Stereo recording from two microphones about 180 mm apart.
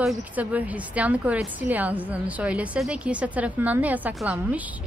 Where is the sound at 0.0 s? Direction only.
5° right (ahead or behind).